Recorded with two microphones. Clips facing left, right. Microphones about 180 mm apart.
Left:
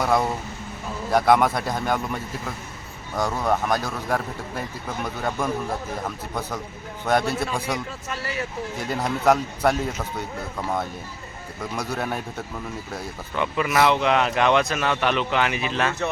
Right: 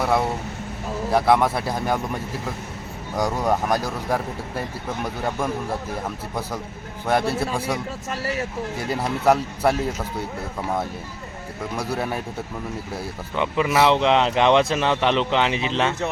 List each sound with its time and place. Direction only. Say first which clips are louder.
0.0 s speech: even; 5° right (ahead or behind)
3.2 s speech: right 1 dB; 10° right (ahead or behind)
7.3 s speech: right 2 dB; 30° right (ahead or behind)
8.9 s speech: right 1 dB; 5° right (ahead or behind)
13.3 s speech: right 2 dB; 20° right (ahead or behind)